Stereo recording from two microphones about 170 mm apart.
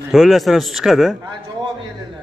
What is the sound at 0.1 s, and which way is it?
A man's voice, centre (ahead or behind).